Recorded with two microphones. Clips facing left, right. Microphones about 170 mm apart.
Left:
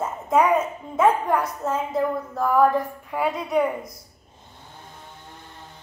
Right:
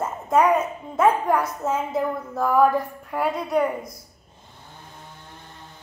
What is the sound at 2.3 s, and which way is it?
A woman's voice, 5° right (ahead or behind).